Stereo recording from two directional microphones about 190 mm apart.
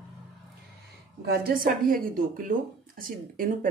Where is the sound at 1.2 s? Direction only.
50° right (ahead or behind).